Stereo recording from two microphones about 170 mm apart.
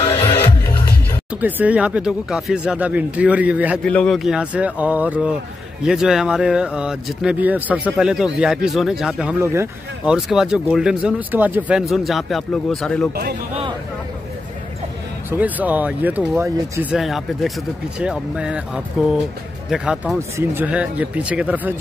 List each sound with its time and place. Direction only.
0.0 s music: 20° left (ahead or behind)
1.4 s speech: 10° right (ahead or behind)
3.8 s speech: 5° left (ahead or behind)
9.4 s speech: 15° right (ahead or behind)
10.1 s speech: centre (ahead or behind)
13.1 s a man's voice: 65° right (ahead or behind)
15.2 s speech: 10° right (ahead or behind)
16.9 s speech: centre (ahead or behind)
20.2 s speech: 15° right (ahead or behind)